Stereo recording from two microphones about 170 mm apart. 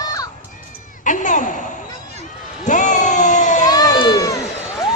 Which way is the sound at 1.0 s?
50° left (ahead or behind).